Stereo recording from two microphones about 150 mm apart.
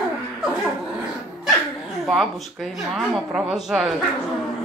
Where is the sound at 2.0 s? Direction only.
Centre (ahead or behind).